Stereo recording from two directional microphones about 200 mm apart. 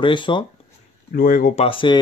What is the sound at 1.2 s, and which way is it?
Speech, 45° left (ahead or behind).